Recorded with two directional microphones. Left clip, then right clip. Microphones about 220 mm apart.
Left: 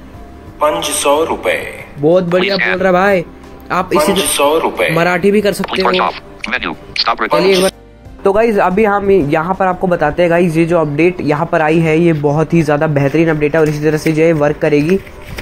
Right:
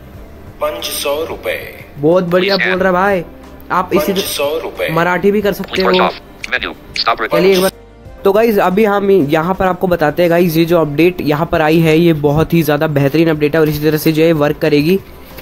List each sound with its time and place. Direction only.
0.6 s speech: 10° right (ahead or behind)
2.8 s speech: 10° left (ahead or behind)
4.0 s speech: 10° right (ahead or behind)
4.9 s speech: 10° left (ahead or behind)
5.6 s speech: 10° right (ahead or behind)
8.2 s speech: 20° right (ahead or behind)